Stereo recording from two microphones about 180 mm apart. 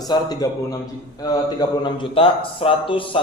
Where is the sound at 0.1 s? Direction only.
20° left (ahead or behind).